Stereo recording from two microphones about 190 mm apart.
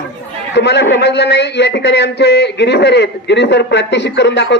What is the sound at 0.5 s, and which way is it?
Speech, 65° left (ahead or behind).